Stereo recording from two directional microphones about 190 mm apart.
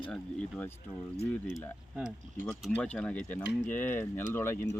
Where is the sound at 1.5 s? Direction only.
5° right (ahead or behind).